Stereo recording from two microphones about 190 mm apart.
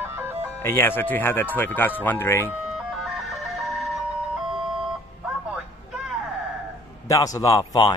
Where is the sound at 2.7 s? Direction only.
Centre (ahead or behind).